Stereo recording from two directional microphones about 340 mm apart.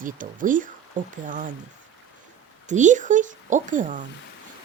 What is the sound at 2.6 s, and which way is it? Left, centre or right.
A woman's voice, right.